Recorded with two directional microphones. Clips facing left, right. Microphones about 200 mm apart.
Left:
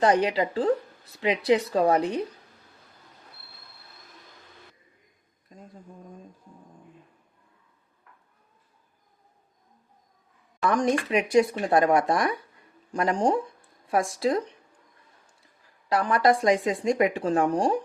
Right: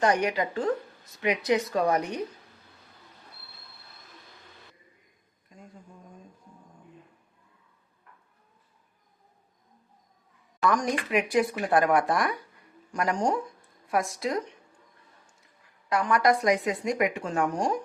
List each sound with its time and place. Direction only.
0.0 s speech: 30° left (ahead or behind)
5.5 s a sound: 35° left (ahead or behind)
10.7 s speech: 25° left (ahead or behind)
15.9 s speech: 30° left (ahead or behind)